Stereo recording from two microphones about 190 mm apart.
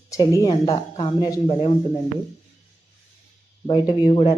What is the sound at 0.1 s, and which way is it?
Speech, 15° left (ahead or behind).